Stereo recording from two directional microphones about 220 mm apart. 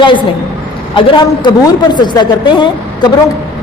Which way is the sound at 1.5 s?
20° left (ahead or behind).